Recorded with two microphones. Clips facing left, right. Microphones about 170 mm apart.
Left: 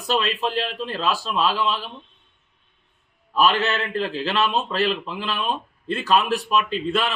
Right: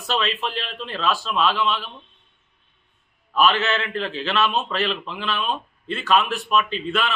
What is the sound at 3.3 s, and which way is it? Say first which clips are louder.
A man's voice: even; 35° left (ahead or behind).